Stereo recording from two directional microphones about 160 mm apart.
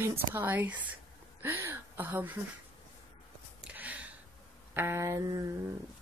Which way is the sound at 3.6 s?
10° right (ahead or behind).